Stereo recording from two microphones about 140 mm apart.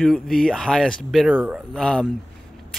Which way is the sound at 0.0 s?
Centre (ahead or behind).